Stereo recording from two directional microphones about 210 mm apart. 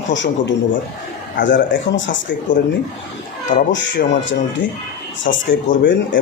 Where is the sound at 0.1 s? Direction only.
60° left (ahead or behind).